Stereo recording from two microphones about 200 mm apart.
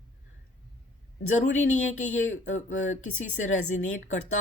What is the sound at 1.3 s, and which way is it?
Speech, 35° left (ahead or behind).